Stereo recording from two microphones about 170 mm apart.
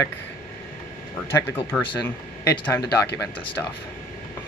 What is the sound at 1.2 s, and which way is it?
Speech, 15° left (ahead or behind).